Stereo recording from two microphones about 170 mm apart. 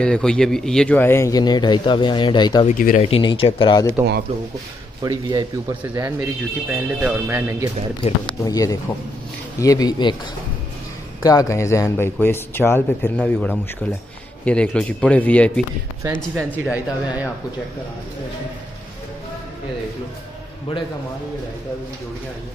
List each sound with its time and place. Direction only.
0.0 s speech: 5° left (ahead or behind); by 2.6 s 25° left (ahead or behind)
2.6 s speech: 55° left (ahead or behind)
3.0 s speech: 30° left (ahead or behind)
5.0 s a man's voice: 25° right (ahead or behind)
5.8 s speech: 15° right (ahead or behind)
8.0 s speech: 20° left (ahead or behind)
11.2 s speech: 20° left (ahead or behind)
16.5 s speech: 10° right (ahead or behind)